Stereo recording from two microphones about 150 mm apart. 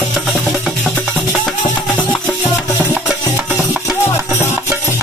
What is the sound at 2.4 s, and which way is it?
Music, 10° right (ahead or behind).